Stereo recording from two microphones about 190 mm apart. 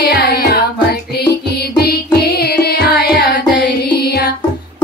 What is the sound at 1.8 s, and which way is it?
Music, 55° left (ahead or behind).